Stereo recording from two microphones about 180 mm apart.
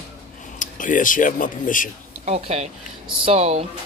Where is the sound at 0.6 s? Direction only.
45° left (ahead or behind).